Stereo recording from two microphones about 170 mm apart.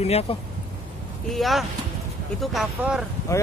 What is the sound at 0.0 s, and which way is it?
Speech, 35° left (ahead or behind).